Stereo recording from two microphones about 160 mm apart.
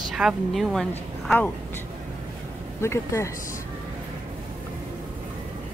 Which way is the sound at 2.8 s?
15° left (ahead or behind).